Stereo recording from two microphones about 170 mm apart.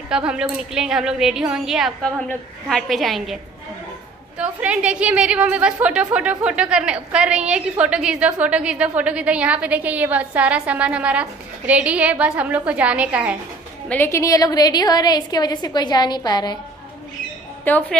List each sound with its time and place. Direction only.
0.1 s a woman's voice: 5° right (ahead or behind)
4.4 s a woman's voice: 5° right (ahead or behind)
13.8 s a woman's voice: 10° left (ahead or behind)
17.6 s a woman's voice: 10° left (ahead or behind)